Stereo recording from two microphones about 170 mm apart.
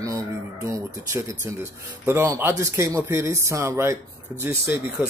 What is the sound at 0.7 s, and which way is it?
Speech, 15° right (ahead or behind).